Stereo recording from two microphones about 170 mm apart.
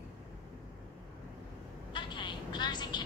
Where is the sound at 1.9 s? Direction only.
25° left (ahead or behind).